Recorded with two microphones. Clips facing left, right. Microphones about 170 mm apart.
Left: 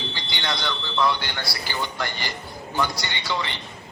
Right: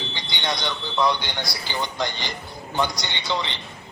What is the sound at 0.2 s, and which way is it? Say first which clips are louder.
A man's voice: right 2 dB; 20° right (ahead or behind).